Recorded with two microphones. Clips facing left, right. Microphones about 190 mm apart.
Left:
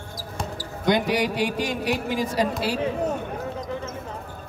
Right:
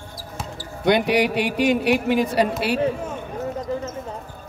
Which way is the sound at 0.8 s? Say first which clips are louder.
Right 4 dB; 65° right (ahead or behind).